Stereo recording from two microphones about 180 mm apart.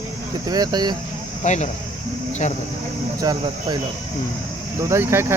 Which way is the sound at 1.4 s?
40° left (ahead or behind).